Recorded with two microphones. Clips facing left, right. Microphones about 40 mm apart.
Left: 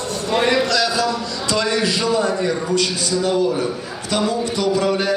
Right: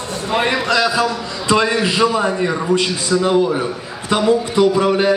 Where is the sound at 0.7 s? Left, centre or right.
Right.